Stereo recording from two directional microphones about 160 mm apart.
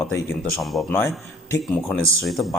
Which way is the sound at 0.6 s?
Centre (ahead or behind).